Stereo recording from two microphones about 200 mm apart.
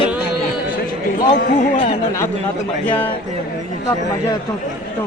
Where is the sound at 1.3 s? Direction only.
30° left (ahead or behind).